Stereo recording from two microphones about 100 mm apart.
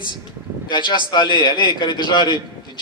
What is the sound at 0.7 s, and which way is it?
A man's voice, 50° left (ahead or behind).